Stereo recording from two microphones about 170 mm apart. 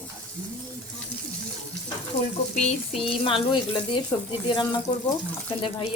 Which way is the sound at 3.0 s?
35° left (ahead or behind).